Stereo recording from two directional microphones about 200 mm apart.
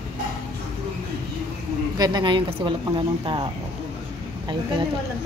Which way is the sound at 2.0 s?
20° right (ahead or behind).